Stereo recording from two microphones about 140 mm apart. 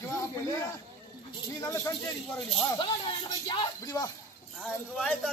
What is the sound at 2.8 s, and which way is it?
Speech, 35° left (ahead or behind).